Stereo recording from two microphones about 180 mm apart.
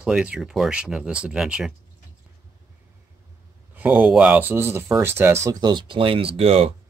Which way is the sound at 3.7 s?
10° right (ahead or behind).